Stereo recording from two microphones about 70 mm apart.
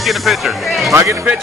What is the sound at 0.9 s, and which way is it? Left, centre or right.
Speech, right.